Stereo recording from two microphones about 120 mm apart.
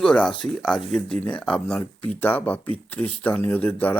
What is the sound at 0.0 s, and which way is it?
Speech, 5° left (ahead or behind).